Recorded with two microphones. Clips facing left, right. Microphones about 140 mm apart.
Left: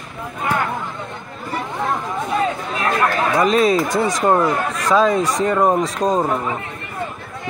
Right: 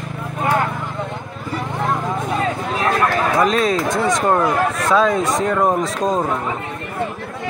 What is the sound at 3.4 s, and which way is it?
Speech, 5° left (ahead or behind).